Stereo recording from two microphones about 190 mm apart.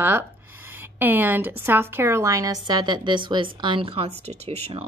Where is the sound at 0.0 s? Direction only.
10° right (ahead or behind).